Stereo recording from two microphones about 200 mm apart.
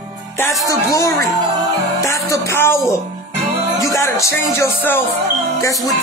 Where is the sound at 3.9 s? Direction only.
15° left (ahead or behind).